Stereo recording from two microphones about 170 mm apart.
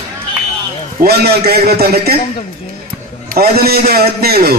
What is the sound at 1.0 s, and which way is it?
A man's voice, 65° right (ahead or behind).